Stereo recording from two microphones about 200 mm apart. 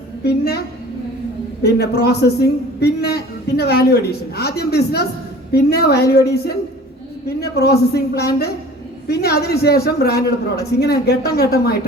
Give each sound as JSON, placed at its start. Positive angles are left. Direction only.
{"t": 0.3, "sound": "a man's voice", "side_deg": 55}
{"t": 1.6, "sound": "a man's voice", "side_deg": 55}